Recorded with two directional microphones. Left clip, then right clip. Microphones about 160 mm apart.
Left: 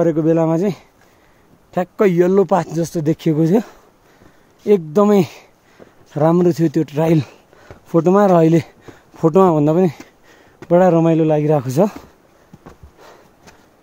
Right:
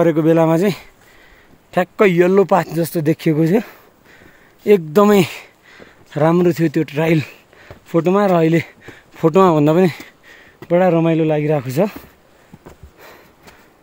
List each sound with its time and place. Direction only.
0.0 s speech: 10° left (ahead or behind); by 3.7 s 25° left (ahead or behind)
4.6 s speech: 5° left (ahead or behind)
10.7 s speech: 35° left (ahead or behind)